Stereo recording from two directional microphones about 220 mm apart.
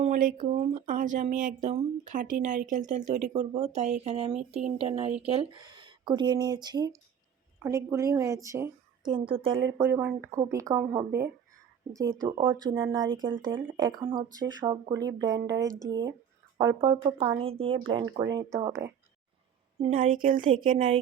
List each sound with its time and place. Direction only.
0.0 s a woman's voice: 40° right (ahead or behind)
9.7 s a woman's voice: 10° right (ahead or behind)
12.3 s speech: 20° right (ahead or behind)
13.1 s speech: 60° right (ahead or behind)
13.6 s a woman's voice: 15° right (ahead or behind)
19.8 s speech: 35° right (ahead or behind)
20.5 s speech: 20° right (ahead or behind)